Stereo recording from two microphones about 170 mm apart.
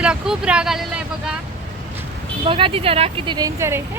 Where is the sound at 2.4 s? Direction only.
30° right (ahead or behind); by 3.8 s 15° right (ahead or behind).